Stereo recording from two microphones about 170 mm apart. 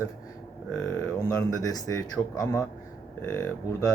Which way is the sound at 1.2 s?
20° left (ahead or behind).